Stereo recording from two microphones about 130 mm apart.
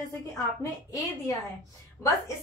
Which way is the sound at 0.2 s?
25° left (ahead or behind).